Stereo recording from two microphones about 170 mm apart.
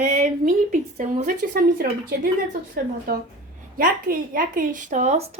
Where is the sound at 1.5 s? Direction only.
60° right (ahead or behind).